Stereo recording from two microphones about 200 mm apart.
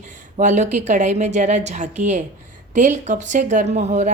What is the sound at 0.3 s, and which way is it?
A woman's voice, 40° right (ahead or behind).